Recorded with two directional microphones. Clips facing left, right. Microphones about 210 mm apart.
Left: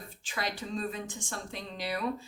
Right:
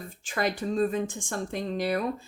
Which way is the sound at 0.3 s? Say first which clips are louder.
Right 8 dB; 50° right (ahead or behind).